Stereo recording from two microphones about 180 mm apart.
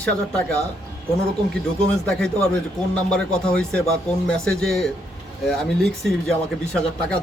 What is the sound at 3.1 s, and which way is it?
Speech, 5° left (ahead or behind).